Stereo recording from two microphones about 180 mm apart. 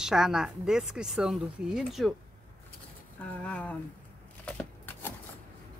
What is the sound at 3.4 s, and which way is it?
Speech, 10° left (ahead or behind).